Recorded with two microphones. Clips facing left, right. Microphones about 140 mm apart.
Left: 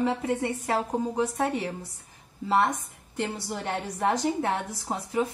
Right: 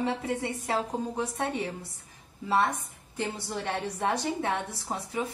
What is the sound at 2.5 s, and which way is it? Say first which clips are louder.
Speech: left 2 dB; 20° left (ahead or behind).